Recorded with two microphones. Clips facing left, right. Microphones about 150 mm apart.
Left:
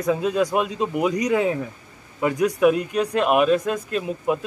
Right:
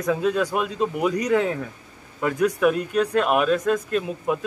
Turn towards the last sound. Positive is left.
turn(degrees=5)  # may be behind; listen again after turning